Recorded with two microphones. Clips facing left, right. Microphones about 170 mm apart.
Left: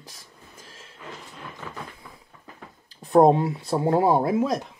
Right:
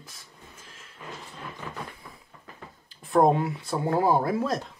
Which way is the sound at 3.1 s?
30° left (ahead or behind).